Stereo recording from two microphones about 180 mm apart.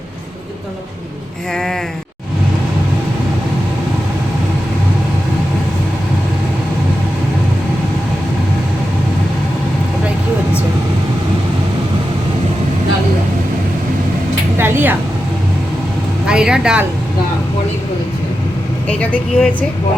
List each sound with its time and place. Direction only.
1.5 s sheep: centre (ahead or behind)
14.6 s a sound: 10° right (ahead or behind)
16.2 s vehicle: 5° right (ahead or behind)
18.9 s speech: 5° left (ahead or behind)